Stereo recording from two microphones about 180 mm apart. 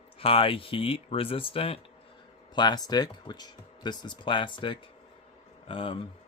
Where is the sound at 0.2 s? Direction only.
30° left (ahead or behind).